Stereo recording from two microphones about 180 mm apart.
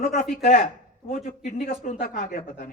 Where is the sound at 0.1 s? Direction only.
45° left (ahead or behind).